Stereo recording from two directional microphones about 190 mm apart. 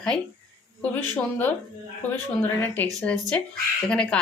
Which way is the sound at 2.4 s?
10° left (ahead or behind).